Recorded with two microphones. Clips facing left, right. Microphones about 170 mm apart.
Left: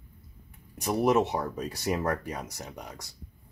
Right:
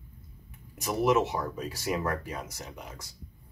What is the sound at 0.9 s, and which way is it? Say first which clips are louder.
Speech: left 1 dB; 35° left (ahead or behind).